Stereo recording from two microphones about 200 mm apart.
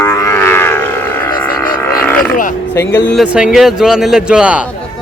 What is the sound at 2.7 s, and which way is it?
Speech, 10° left (ahead or behind).